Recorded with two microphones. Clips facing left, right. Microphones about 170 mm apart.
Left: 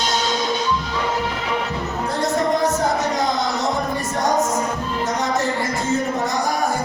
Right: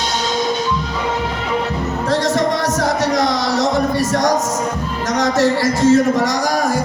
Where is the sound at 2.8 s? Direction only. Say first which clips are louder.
Right 4 dB; 80° right.